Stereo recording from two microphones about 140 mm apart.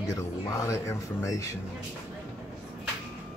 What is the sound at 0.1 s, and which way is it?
Speech, 25° left (ahead or behind).